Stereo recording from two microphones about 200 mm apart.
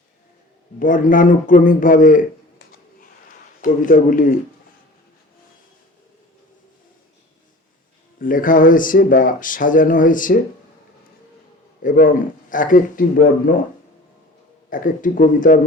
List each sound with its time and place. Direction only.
0.8 s a man's voice: 40° left (ahead or behind)
8.2 s speech: 45° left (ahead or behind)
11.8 s speech: 40° left (ahead or behind)
14.7 s a man's voice: 40° left (ahead or behind)